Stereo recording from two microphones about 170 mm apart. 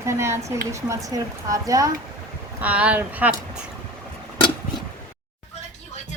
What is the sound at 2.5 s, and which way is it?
Speech, 10° right (ahead or behind).